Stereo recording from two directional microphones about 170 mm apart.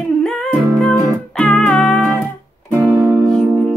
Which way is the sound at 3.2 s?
5° left (ahead or behind).